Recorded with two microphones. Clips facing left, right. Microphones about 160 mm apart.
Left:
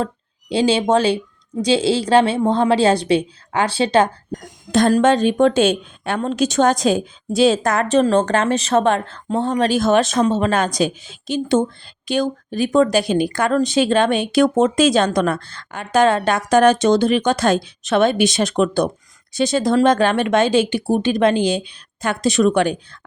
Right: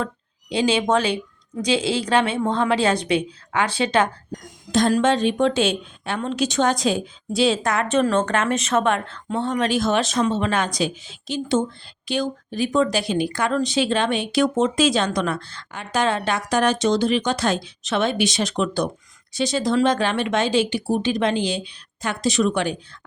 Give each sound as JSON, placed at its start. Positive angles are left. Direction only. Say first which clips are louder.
{"t": 0.5, "sound": "speech", "louder": "left 4 dB", "side_deg": 30}
{"t": 4.3, "sound": "speech", "louder": "left 4 dB", "side_deg": 55}